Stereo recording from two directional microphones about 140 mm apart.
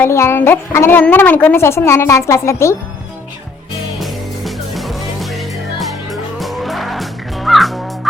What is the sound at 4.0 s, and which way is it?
Music, centre (ahead or behind).